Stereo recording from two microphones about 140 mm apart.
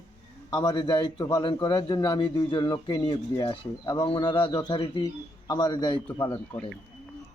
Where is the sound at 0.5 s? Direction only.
30° left (ahead or behind).